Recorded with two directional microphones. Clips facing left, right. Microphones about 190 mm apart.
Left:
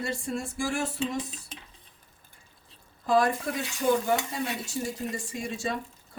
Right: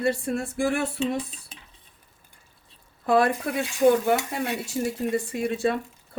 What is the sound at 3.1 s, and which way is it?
Speech, 60° right (ahead or behind).